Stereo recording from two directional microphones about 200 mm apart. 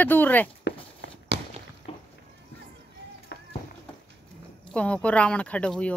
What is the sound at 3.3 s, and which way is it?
Run, 55° left (ahead or behind).